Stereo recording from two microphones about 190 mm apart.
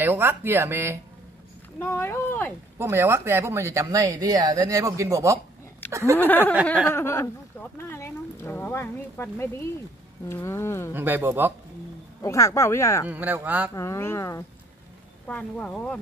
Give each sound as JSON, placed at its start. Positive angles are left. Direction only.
{"t": 0.0, "sound": "speech", "side_deg": -10}
{"t": 1.8, "sound": "speech", "side_deg": 15}
{"t": 2.8, "sound": "speech", "side_deg": -15}
{"t": 6.1, "sound": "speech", "side_deg": 10}
{"t": 10.9, "sound": "speech", "side_deg": -10}
{"t": 12.2, "sound": "speech", "side_deg": 15}
{"t": 13.1, "sound": "speech", "side_deg": -10}
{"t": 13.7, "sound": "speech", "side_deg": 15}